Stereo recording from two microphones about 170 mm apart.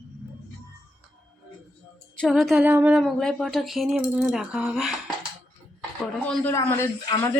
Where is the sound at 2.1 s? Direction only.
Centre (ahead or behind).